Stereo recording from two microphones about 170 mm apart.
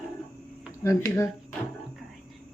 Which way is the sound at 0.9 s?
15° left (ahead or behind).